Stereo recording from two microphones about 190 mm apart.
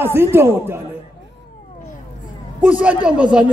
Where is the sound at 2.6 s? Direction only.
5° right (ahead or behind).